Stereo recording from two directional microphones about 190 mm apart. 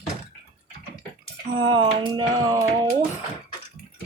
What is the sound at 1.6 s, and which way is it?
Speech, 25° right (ahead or behind).